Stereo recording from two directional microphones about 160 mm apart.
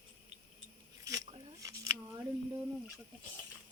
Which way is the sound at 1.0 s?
20° right (ahead or behind).